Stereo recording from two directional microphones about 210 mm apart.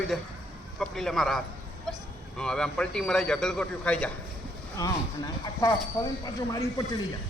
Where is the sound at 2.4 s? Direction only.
5° left (ahead or behind).